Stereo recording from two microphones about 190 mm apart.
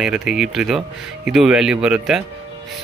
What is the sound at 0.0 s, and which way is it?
Speech, 5° right (ahead or behind).